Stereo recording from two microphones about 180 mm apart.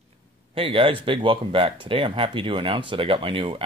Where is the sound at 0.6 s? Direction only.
30° right (ahead or behind).